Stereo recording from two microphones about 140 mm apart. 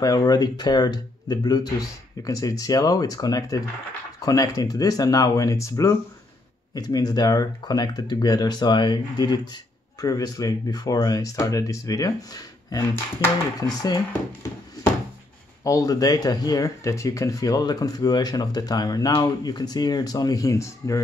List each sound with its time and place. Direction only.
0.0 s speech: 25° left (ahead or behind)